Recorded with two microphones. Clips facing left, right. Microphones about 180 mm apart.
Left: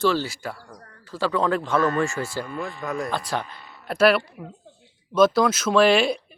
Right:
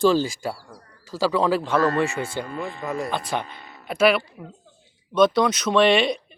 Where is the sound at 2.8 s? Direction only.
Centre (ahead or behind).